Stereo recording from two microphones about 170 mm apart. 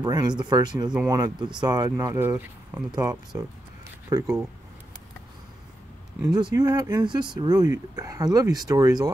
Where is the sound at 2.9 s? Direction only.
25° right (ahead or behind).